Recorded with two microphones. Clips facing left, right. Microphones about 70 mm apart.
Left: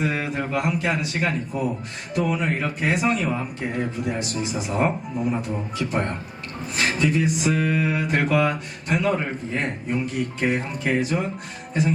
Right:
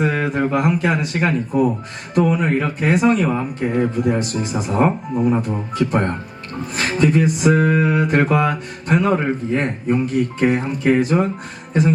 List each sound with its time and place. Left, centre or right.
0.0 s speech: right
11.7 s music: right